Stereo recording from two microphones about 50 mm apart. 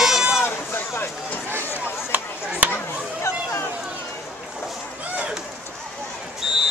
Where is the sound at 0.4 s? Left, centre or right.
Left.